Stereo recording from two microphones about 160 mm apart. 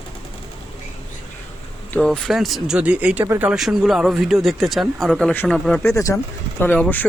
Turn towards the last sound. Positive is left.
turn(degrees=10)  # may be behind; listen again after turning